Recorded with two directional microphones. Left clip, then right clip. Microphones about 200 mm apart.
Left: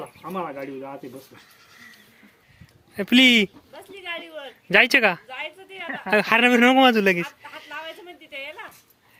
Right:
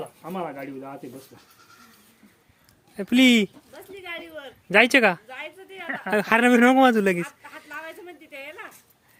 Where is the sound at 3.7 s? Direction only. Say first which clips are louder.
Left 3 dB; 60° right (ahead or behind).